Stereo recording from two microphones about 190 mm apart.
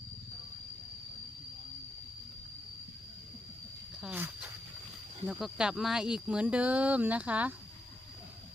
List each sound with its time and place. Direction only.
4.0 s speech: 5° right (ahead or behind)